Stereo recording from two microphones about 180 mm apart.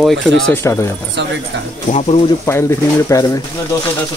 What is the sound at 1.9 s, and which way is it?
Speech, 40° left (ahead or behind).